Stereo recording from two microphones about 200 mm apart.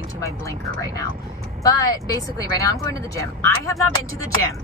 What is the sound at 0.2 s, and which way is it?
Speech, 15° left (ahead or behind).